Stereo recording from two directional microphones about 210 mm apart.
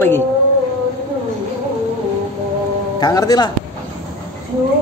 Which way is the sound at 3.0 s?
20° left (ahead or behind).